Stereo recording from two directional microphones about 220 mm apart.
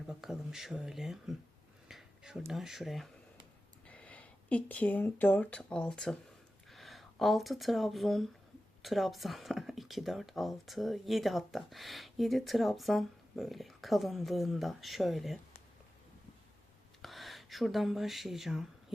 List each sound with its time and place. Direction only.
0.1 s speech: centre (ahead or behind)
1.9 s a sound: centre (ahead or behind)
2.5 s speech: centre (ahead or behind)
17.0 s speech: centre (ahead or behind)